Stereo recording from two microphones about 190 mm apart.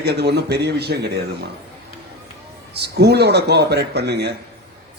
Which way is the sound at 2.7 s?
60° right (ahead or behind).